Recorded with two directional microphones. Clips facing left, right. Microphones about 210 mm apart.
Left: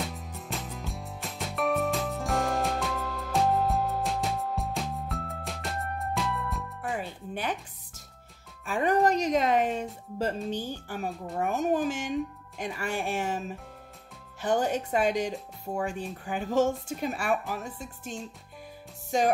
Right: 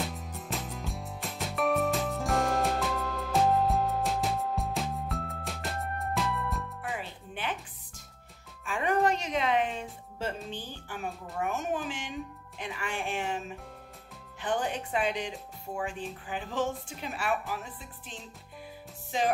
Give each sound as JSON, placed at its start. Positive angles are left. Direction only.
{"t": 0.0, "sound": "music", "side_deg": 0}
{"t": 7.0, "sound": "music", "side_deg": 45}
{"t": 8.6, "sound": "music", "side_deg": 40}
{"t": 10.5, "sound": "speech", "side_deg": 40}
{"t": 14.4, "sound": "speech", "side_deg": 40}